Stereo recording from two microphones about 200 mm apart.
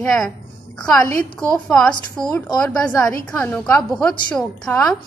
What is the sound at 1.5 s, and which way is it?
A woman's voice, 5° left (ahead or behind).